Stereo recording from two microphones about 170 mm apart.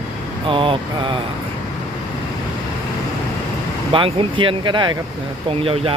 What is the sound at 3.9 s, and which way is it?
Speech, 30° right (ahead or behind).